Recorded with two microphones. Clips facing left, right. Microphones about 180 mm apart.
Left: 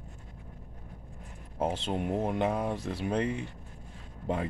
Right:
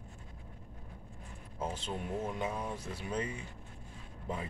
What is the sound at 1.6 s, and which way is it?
Speech, 70° left (ahead or behind).